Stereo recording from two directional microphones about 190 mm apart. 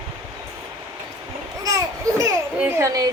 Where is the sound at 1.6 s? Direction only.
15° right (ahead or behind).